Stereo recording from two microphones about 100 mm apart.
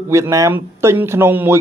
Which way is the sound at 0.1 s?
30° right (ahead or behind).